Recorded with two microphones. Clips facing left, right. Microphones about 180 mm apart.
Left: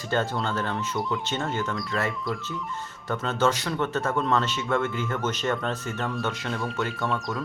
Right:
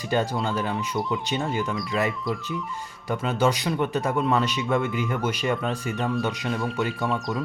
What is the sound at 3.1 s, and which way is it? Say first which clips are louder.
Speech: right 1 dB; 10° right (ahead or behind).